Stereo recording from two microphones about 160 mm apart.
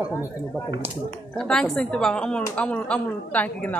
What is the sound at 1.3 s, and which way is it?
A woman's voice, 5° left (ahead or behind).